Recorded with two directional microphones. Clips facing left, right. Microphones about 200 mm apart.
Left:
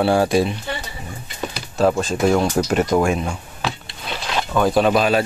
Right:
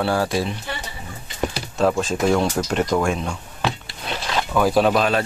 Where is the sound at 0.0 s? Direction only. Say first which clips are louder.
Left 5 dB; 20° left (ahead or behind).